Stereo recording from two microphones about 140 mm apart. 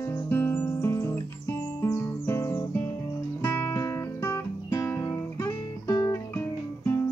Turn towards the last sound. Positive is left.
turn(degrees=20)  # may be behind; listen again after turning